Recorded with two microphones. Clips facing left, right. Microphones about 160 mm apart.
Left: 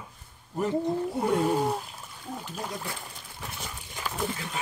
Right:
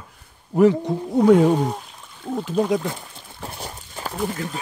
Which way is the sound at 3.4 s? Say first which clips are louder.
Right 6 dB; 35° right (ahead or behind).